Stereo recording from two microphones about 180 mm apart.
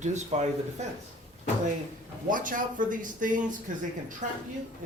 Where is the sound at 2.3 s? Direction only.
50° right (ahead or behind).